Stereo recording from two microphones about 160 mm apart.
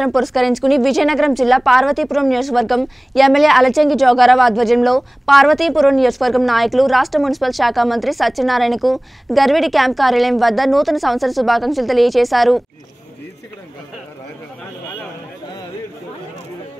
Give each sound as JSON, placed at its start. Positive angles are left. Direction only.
{"t": 0.0, "sound": "a woman's voice", "side_deg": 0}